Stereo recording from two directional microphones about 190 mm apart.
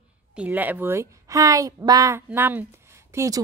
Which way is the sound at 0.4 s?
10° right (ahead or behind).